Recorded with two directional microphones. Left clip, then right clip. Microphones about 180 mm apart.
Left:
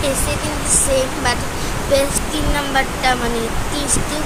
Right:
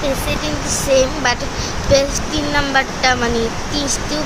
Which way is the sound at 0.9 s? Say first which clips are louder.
Right 5 dB; 20° right (ahead or behind).